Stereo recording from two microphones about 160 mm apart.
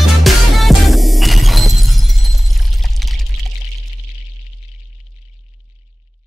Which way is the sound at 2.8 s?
Centre (ahead or behind).